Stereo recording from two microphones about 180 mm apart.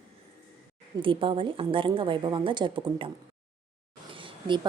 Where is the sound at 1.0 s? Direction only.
30° right (ahead or behind).